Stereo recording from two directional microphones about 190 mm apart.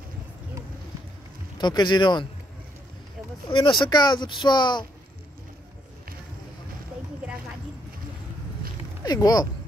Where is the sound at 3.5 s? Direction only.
25° left (ahead or behind).